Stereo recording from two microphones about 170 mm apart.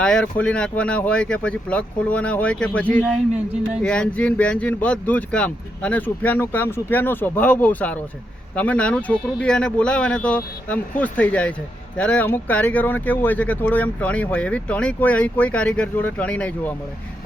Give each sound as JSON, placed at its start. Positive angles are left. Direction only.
{"t": 0.0, "sound": "speech", "side_deg": 5}